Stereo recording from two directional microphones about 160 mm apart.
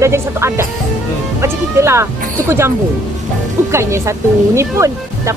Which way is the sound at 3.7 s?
15° right (ahead or behind).